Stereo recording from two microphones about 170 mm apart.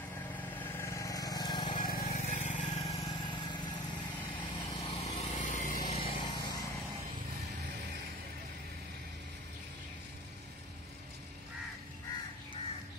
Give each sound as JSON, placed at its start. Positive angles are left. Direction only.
{"t": 0.7, "sound": "vehicle", "side_deg": 15}
{"t": 1.7, "sound": "vehicle", "side_deg": 55}
{"t": 2.1, "sound": "vehicle", "side_deg": 45}
{"t": 4.6, "sound": "lawn mower", "side_deg": 30}
{"t": 5.9, "sound": "lawn mower", "side_deg": 30}